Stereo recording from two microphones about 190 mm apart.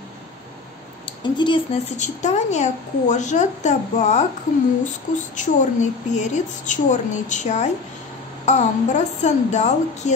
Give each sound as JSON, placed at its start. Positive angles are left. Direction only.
{"t": 1.0, "sound": "speech", "side_deg": 25}
{"t": 2.0, "sound": "a woman's voice", "side_deg": 40}